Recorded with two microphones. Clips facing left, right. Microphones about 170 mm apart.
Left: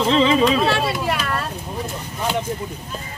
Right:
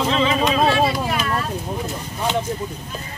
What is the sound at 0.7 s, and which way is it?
Speech, 70° left (ahead or behind).